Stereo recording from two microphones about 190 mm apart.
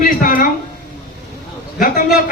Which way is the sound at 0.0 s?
45° left (ahead or behind).